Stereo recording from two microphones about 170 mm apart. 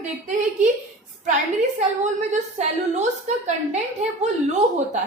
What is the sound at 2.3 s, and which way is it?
A woman's voice, 45° right (ahead or behind).